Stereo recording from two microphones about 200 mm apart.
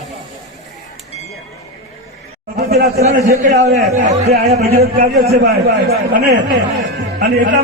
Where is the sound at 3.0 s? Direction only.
35° right (ahead or behind).